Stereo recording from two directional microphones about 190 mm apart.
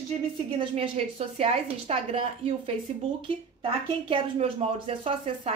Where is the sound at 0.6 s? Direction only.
30° right (ahead or behind).